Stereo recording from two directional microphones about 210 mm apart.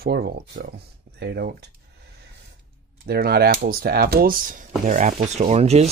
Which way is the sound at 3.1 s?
45° right (ahead or behind).